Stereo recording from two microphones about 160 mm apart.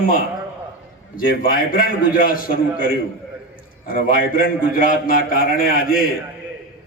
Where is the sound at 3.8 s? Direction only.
60° left (ahead or behind).